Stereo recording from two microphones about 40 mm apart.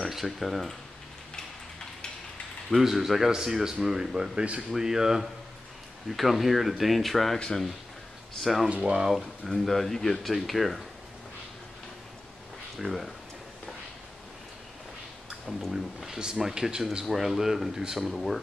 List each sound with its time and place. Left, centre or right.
0.1 s speech: centre
2.7 s speech: centre
3.3 s speech: centre
4.4 s speech: right
4.6 s speech: centre
6.0 s speech: centre
8.4 s speech: centre
8.6 s speech: right
9.1 s speech: centre
12.7 s speech: centre
15.5 s speech: centre
16.1 s speech: centre